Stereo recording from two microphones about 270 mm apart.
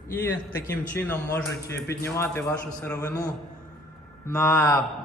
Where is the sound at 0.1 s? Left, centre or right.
Centre.